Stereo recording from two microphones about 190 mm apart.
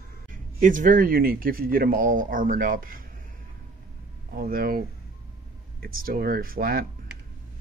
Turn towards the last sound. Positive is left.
turn(degrees=-50)  # may be behind; listen again after turning